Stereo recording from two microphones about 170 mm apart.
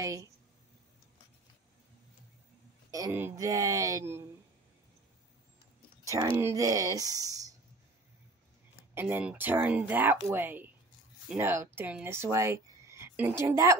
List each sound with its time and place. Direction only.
0.0 s a woman's voice: 20° right (ahead or behind)
2.9 s speech: 15° right (ahead or behind)
6.3 s speech: 15° right (ahead or behind)
8.9 s speech: 10° right (ahead or behind)